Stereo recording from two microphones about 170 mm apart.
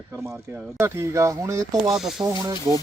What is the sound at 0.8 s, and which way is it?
Speech, 15° right (ahead or behind).